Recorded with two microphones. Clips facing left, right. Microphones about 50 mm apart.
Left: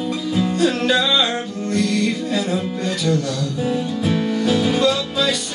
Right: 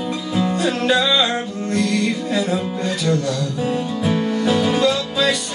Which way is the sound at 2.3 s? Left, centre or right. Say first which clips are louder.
Right 1 dB; right.